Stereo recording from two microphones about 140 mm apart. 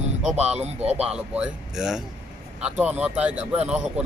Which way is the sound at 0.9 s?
10° right (ahead or behind).